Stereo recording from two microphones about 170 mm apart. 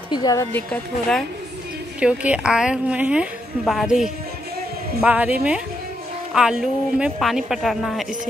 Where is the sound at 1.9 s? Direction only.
5° right (ahead or behind).